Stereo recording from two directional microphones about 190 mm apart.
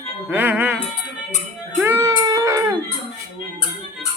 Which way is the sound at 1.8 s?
10° right (ahead or behind).